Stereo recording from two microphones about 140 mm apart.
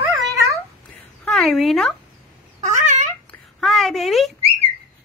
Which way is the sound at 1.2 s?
Centre (ahead or behind).